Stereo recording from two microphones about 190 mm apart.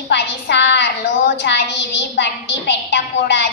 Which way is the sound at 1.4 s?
65° left (ahead or behind).